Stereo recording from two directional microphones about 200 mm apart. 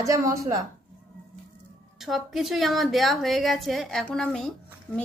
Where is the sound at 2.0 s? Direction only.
Centre (ahead or behind).